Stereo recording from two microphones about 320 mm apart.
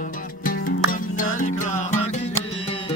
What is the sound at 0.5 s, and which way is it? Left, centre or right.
Music, left.